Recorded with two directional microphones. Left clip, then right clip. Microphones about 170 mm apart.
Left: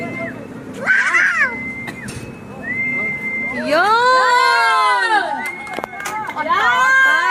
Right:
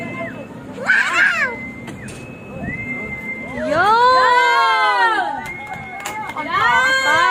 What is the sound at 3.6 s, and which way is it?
Speech, 10° left (ahead or behind).